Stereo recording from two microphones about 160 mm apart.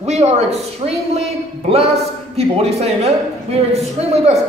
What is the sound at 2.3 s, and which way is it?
A man's voice, 40° right (ahead or behind).